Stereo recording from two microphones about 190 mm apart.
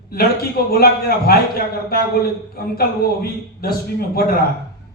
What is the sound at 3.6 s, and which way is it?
Speech, 50° left (ahead or behind).